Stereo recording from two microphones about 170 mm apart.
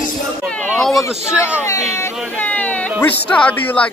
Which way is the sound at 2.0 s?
10° left (ahead or behind).